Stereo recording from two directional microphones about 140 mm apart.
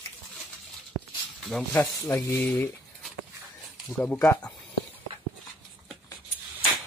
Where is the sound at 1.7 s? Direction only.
15° left (ahead or behind).